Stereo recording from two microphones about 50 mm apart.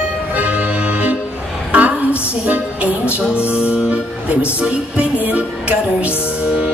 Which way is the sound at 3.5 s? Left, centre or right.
Right.